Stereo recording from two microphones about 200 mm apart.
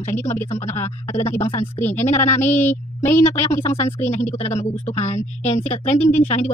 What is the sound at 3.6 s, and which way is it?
Speech, 30° left (ahead or behind).